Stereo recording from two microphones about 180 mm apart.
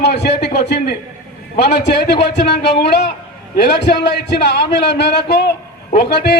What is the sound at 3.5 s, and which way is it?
A man's voice, 65° left (ahead or behind).